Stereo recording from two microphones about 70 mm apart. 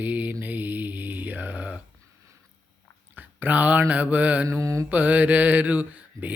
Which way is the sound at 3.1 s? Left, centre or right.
Right.